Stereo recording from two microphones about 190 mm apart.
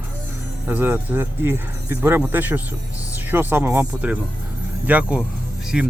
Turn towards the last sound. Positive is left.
turn(degrees=-5)  # may be behind; listen again after turning